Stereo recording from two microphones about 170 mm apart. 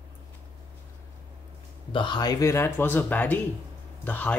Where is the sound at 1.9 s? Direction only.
25° left (ahead or behind).